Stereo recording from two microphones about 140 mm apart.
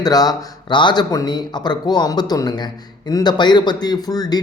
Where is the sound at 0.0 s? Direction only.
25° left (ahead or behind).